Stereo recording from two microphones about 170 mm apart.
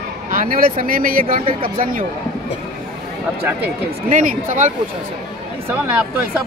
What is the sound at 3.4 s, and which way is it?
Speech, 10° right (ahead or behind).